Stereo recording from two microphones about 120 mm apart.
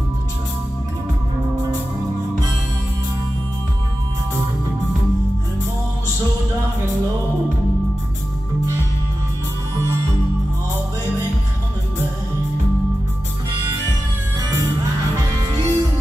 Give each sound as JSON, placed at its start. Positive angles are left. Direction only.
{"t": 15.1, "sound": "music", "side_deg": -30}